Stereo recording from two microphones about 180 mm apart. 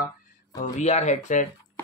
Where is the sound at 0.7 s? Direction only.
40° left (ahead or behind).